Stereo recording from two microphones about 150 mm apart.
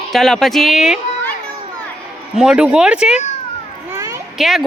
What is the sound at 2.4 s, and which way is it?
Speech, 5° right (ahead or behind).